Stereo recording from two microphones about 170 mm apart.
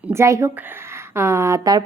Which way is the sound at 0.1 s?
15° right (ahead or behind).